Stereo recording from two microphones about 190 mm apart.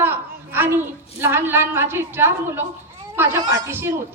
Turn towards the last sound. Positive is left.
turn(degrees=-15)  # may be behind; listen again after turning